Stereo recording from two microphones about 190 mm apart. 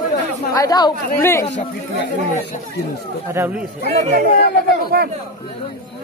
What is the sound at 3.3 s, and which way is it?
Speech, 10° right (ahead or behind).